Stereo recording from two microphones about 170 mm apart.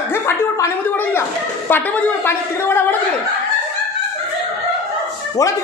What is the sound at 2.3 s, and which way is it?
Speech, 15° left (ahead or behind).